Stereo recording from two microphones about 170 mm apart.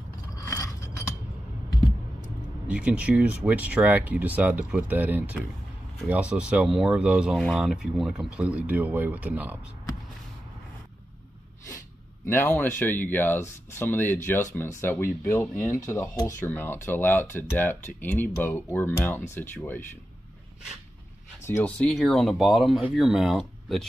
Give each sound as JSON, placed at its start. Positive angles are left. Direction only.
{"t": 0.5, "sound": "a sound", "side_deg": 20}
{"t": 2.7, "sound": "speech", "side_deg": -5}
{"t": 12.3, "sound": "speech", "side_deg": 10}
{"t": 21.5, "sound": "speech", "side_deg": 10}